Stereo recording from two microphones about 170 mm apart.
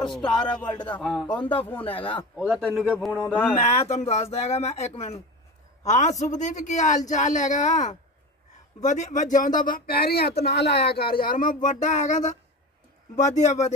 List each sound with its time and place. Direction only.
0.2 s speech: 25° left (ahead or behind)
2.3 s a man's voice: 5° right (ahead or behind)
3.3 s speech: 10° left (ahead or behind)
3.6 s a man's voice: 40° left (ahead or behind); by 10.3 s 65° left (ahead or behind)
10.4 s a man's voice: 80° left; by 13.7 s 45° left (ahead or behind)